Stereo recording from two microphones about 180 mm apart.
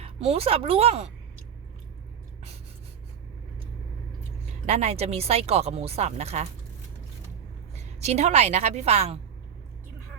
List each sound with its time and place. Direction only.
0.0 s speech: 35° right (ahead or behind)
4.6 s speech: 40° right (ahead or behind)
7.8 s a woman's voice: 40° right (ahead or behind)